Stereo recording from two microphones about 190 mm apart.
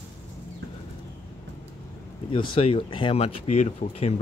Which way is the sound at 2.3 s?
25° left (ahead or behind).